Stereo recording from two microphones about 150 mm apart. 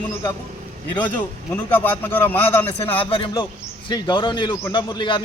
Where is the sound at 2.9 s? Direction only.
35° left (ahead or behind).